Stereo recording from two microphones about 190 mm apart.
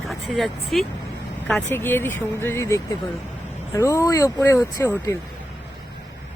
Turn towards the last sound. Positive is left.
turn(degrees=15)  # may be behind; listen again after turning